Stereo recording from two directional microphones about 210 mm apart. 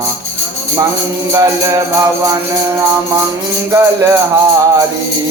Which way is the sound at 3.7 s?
15° right (ahead or behind).